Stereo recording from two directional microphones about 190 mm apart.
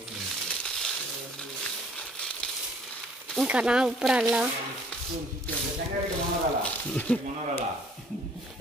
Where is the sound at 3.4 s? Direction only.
5° right (ahead or behind).